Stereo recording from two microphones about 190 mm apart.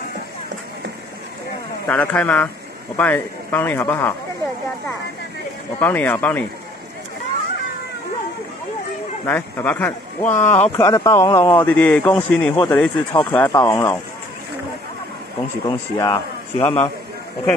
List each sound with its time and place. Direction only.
1.9 s speech: 10° left (ahead or behind)
5.8 s speech: 10° left (ahead or behind)
9.2 s speech: 10° left (ahead or behind)
15.6 s speech: 20° left (ahead or behind)
16.6 s a man's voice: 30° left (ahead or behind)